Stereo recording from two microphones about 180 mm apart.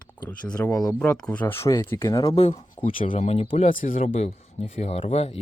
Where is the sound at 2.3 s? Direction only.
35° left (ahead or behind).